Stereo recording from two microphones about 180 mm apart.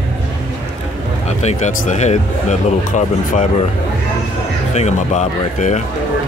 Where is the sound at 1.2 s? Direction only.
40° left (ahead or behind).